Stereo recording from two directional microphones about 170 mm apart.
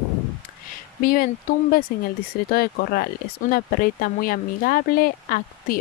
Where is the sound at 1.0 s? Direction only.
55° left (ahead or behind).